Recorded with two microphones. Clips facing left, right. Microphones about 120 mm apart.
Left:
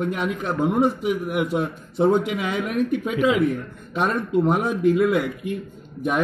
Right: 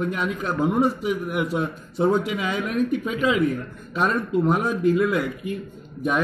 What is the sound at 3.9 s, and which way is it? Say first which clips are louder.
Speech: even; 15° left (ahead or behind).